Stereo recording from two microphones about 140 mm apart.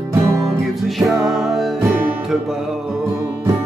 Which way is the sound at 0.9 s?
Centre (ahead or behind).